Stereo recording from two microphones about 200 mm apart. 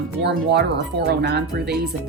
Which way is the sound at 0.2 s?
55° right (ahead or behind).